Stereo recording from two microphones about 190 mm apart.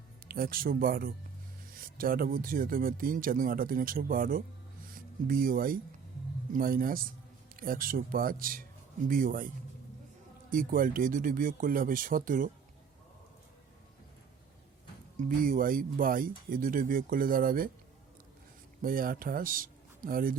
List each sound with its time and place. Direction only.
0.3 s speech: 50° right (ahead or behind)
10.5 s speech: 45° right (ahead or behind)
15.2 s speech: 45° right (ahead or behind)
18.8 s speech: 50° right (ahead or behind)